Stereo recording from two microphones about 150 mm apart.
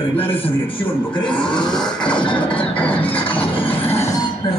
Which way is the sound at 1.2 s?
5° left (ahead or behind).